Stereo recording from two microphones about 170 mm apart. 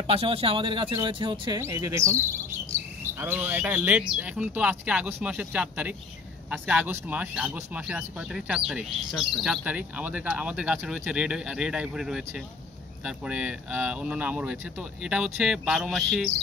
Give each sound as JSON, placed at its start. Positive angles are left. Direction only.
{"t": 0.0, "sound": "speech", "side_deg": -35}
{"t": 1.6, "sound": "speech", "side_deg": -15}